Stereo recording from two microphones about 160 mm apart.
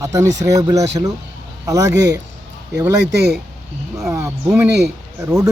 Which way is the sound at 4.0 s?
20° right (ahead or behind).